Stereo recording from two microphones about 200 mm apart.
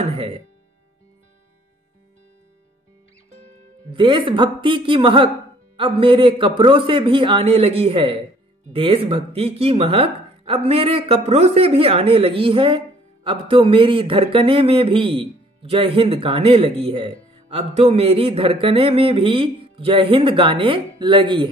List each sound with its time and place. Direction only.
3.9 s speech: 25° right (ahead or behind)